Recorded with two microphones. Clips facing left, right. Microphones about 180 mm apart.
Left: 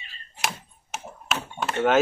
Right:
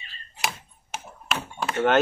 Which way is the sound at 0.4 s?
Centre (ahead or behind).